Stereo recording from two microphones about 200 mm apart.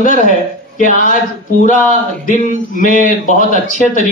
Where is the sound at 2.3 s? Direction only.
40° left (ahead or behind).